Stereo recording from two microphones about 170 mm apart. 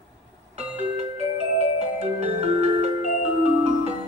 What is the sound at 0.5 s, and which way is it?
Music, 40° right (ahead or behind).